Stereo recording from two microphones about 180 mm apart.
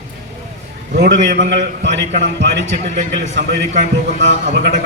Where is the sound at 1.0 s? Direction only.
75° right (ahead or behind).